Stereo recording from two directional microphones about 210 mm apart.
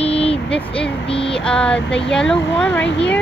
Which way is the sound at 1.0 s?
25° left (ahead or behind).